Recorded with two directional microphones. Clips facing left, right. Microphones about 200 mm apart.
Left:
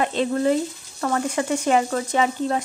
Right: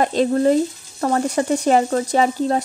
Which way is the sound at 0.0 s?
40° right (ahead or behind).